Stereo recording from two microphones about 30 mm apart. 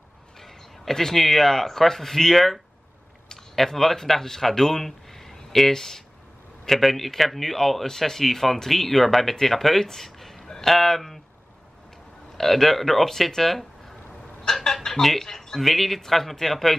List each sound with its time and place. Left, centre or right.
0.4 s a sound: centre
1.1 s speech: centre
3.5 s speech: centre
6.7 s a man's voice: centre
12.4 s speech: centre
14.4 s a sound: centre
15.0 s speech: centre